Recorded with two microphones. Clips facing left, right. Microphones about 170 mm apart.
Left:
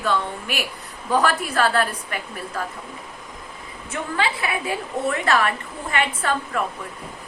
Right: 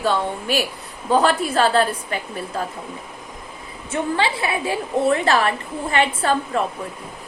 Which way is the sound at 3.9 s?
30° right (ahead or behind).